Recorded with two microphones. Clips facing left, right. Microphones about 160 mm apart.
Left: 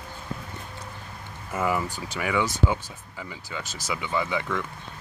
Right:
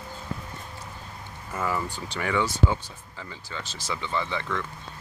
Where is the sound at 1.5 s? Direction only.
15° left (ahead or behind).